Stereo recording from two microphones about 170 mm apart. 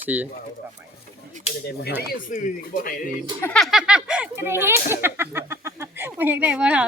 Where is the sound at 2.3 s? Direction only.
55° left (ahead or behind).